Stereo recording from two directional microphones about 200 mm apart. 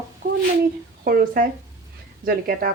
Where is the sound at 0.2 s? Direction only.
40° right (ahead or behind).